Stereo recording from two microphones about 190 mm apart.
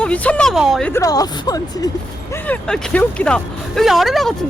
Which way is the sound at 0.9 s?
15° left (ahead or behind).